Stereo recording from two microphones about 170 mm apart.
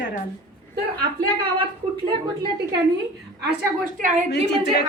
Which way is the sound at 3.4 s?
50° right (ahead or behind).